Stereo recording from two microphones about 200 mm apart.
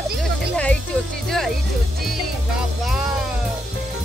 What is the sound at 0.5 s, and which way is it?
Music, 5° left (ahead or behind).